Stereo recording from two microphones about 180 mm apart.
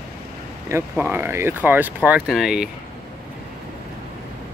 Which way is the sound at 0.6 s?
15° right (ahead or behind).